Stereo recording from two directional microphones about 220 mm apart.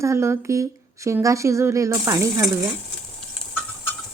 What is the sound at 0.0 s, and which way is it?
Speech, 10° right (ahead or behind).